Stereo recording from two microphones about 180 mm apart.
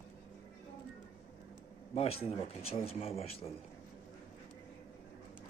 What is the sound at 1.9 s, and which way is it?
Speech, 35° left (ahead or behind).